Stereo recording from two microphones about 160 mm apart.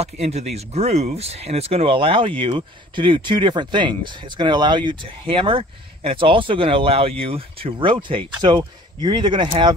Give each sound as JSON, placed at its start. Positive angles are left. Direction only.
{"t": 0.0, "sound": "speech", "side_deg": -40}